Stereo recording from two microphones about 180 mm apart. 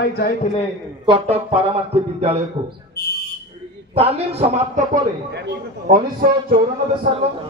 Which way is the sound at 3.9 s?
35° right (ahead or behind).